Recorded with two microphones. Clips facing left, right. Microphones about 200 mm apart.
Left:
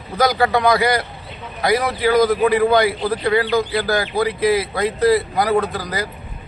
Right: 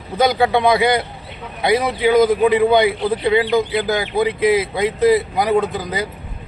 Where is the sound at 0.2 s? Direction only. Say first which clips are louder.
Right 1 dB; 25° right (ahead or behind).